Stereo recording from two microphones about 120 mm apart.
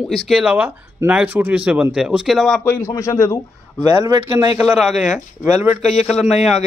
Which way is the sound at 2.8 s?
25° left (ahead or behind).